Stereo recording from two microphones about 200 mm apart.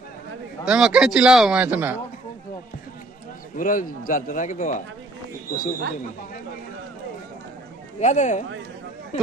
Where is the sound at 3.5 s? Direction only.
40° left (ahead or behind).